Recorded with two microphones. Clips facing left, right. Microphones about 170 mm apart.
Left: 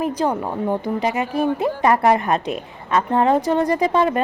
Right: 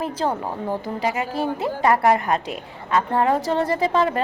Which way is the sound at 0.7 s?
20° left (ahead or behind).